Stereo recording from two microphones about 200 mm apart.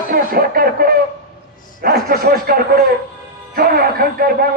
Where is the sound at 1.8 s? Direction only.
50° right (ahead or behind).